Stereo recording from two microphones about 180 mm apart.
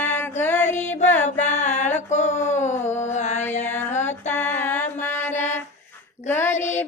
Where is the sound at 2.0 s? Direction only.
40° left (ahead or behind).